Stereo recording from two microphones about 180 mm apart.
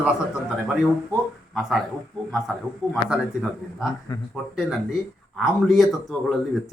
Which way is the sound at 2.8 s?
20° right (ahead or behind).